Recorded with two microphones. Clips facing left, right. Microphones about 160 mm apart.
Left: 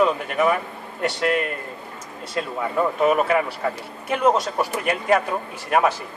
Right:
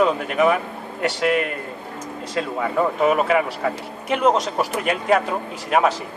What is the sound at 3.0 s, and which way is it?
Speech, centre (ahead or behind).